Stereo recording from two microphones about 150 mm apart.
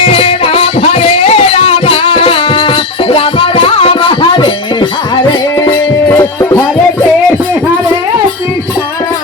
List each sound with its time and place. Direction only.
0.0 s music: 40° left (ahead or behind)
5.3 s music: 20° left (ahead or behind)